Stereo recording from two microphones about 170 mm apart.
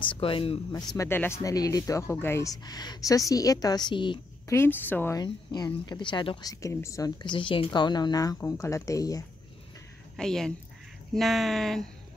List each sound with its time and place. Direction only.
0.0 s speech: 30° left (ahead or behind)
0.9 s speech: 15° left (ahead or behind)
4.5 s speech: 10° left (ahead or behind)
5.2 s speech: 25° left (ahead or behind)
10.1 s speech: 5° left (ahead or behind)